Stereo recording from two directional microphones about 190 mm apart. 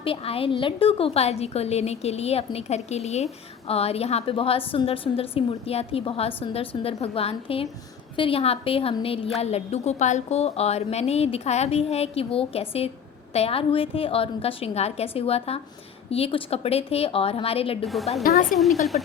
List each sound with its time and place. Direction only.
0.0 s a woman's voice: 30° left (ahead or behind)
17.8 s a woman's voice: centre (ahead or behind)
18.2 s a woman's voice: 50° left (ahead or behind)
18.5 s a woman's voice: centre (ahead or behind)